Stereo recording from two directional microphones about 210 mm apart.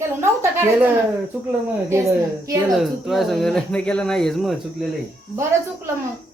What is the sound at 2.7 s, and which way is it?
A woman's voice, centre (ahead or behind).